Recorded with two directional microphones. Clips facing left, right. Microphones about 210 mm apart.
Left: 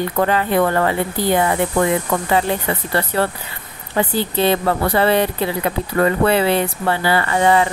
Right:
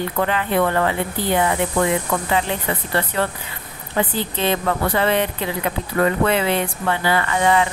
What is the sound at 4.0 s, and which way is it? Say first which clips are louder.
Speech: left 4 dB; 40° left (ahead or behind).